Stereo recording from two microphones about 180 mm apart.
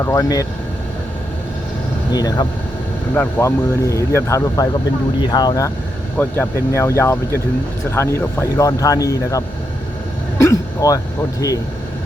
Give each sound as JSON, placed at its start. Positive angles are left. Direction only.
{"t": 0.0, "sound": "speech", "side_deg": 20}
{"t": 2.1, "sound": "speech", "side_deg": 20}